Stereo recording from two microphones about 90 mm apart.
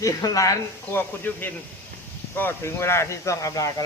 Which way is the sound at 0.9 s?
20° left (ahead or behind).